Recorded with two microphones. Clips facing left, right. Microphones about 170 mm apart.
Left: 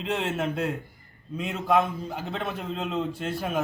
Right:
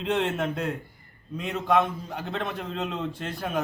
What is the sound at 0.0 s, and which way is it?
A man's voice, centre (ahead or behind).